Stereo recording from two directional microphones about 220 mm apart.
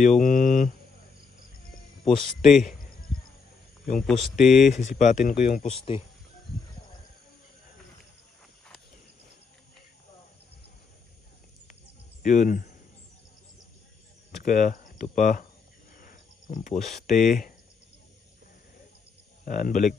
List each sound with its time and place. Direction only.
0.0 s a sound: 35° left (ahead or behind)
2.4 s speech: centre (ahead or behind)
4.0 s speech: centre (ahead or behind)
4.6 s speech: 35° left (ahead or behind)
12.2 s speech: 35° left (ahead or behind)
14.3 s hum: 35° left (ahead or behind)
16.0 s cricket: 35° left (ahead or behind)
17.3 s speech: 40° left (ahead or behind)
19.4 s speech: 35° left (ahead or behind)